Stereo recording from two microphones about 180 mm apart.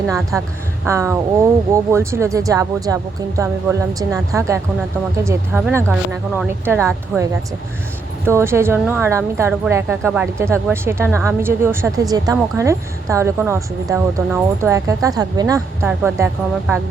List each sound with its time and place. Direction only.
0.9 s a woman's voice: 15° right (ahead or behind)
8.2 s a woman's voice: 15° right (ahead or behind)